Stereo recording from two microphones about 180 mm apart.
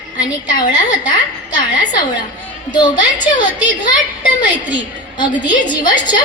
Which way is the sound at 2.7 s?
25° left (ahead or behind).